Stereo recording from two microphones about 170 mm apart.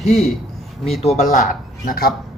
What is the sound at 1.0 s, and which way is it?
Speech, 45° left (ahead or behind).